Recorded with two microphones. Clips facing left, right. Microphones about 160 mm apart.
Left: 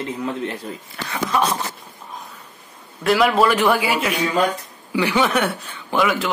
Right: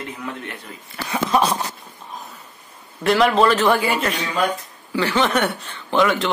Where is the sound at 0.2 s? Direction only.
30° left (ahead or behind).